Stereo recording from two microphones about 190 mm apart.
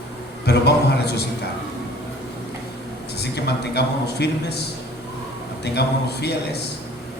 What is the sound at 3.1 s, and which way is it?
A man's voice, 60° left (ahead or behind).